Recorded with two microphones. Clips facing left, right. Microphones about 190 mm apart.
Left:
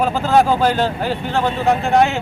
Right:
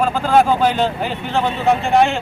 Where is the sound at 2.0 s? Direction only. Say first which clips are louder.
Even; 5° left (ahead or behind).